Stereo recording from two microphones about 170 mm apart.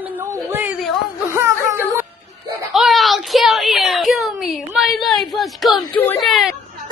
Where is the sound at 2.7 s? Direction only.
Centre (ahead or behind).